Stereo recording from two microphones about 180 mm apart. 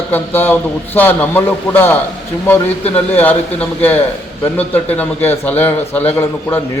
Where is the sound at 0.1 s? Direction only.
10° left (ahead or behind).